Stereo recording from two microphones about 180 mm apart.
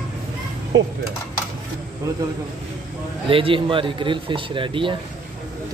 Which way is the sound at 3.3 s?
30° right (ahead or behind).